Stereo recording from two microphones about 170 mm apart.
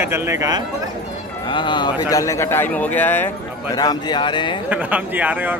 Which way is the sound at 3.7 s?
25° left (ahead or behind).